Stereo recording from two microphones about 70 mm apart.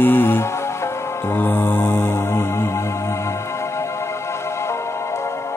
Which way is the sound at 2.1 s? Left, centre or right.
Left.